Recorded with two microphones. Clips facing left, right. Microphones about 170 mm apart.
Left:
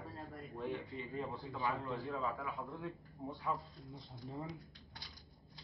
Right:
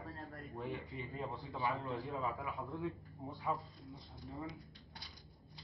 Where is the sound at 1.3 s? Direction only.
20° right (ahead or behind).